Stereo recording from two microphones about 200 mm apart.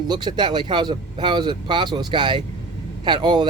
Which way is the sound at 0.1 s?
20° right (ahead or behind).